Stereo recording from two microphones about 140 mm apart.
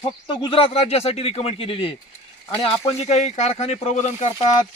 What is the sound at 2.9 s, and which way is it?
Speech, 50° left (ahead or behind).